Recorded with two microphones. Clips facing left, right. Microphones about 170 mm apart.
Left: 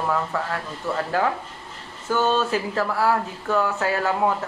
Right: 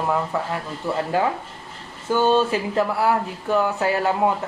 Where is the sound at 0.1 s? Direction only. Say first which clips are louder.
Right 2 dB; 20° right (ahead or behind).